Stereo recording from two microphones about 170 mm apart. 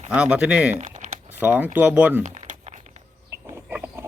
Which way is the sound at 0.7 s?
45° right (ahead or behind).